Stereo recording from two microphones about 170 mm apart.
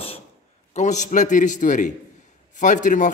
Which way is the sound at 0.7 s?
45° left (ahead or behind).